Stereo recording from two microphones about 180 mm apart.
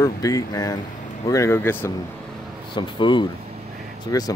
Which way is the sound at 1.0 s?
45° left (ahead or behind).